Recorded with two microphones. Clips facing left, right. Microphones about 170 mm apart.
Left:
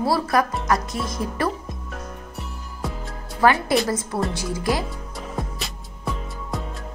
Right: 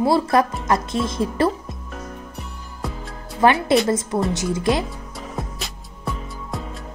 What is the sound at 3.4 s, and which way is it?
Speech, 20° right (ahead or behind).